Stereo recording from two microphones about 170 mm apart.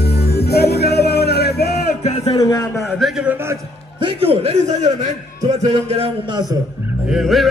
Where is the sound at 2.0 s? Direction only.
35° left (ahead or behind).